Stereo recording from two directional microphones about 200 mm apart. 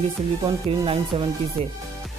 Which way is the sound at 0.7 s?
25° right (ahead or behind).